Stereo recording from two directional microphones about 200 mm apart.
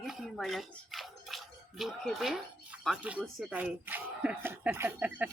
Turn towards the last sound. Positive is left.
turn(degrees=-10)  # may be behind; listen again after turning